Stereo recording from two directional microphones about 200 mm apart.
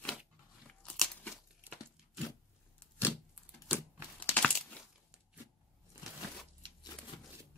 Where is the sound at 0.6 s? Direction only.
5° left (ahead or behind).